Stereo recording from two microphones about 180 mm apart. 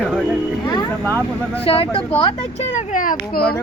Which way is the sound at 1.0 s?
10° left (ahead or behind).